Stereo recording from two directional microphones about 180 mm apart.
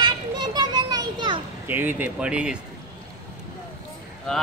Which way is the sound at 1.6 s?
10° right (ahead or behind).